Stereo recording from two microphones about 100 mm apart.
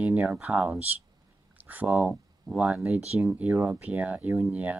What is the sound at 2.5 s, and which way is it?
Speech, 40° right (ahead or behind).